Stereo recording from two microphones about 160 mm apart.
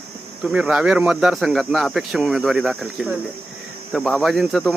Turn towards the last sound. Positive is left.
turn(degrees=0)  # may be behind; listen again after turning